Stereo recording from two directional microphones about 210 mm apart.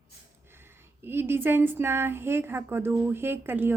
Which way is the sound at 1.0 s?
10° right (ahead or behind).